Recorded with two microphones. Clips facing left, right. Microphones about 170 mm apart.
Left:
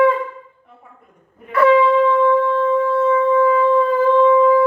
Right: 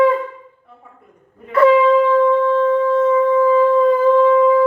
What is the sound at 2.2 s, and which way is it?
Music, 20° right (ahead or behind).